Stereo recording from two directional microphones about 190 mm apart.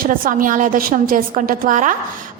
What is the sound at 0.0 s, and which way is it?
A woman's voice, 45° right (ahead or behind).